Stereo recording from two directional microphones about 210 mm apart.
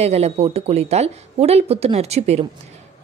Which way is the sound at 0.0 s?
30° right (ahead or behind).